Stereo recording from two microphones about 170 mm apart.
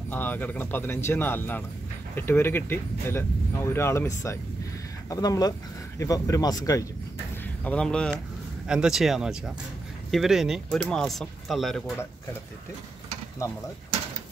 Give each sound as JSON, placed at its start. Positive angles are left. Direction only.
{"t": 0.1, "sound": "speech", "side_deg": 10}
{"t": 7.6, "sound": "speech", "side_deg": 5}